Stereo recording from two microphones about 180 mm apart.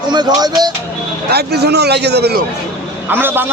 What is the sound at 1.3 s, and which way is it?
A man's voice, 65° right (ahead or behind).